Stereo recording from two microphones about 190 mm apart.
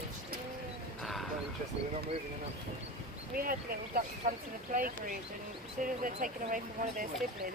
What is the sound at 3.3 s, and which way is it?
Speech, 50° right (ahead or behind).